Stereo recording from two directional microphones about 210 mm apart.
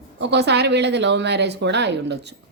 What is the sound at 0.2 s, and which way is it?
Speech, 55° right (ahead or behind).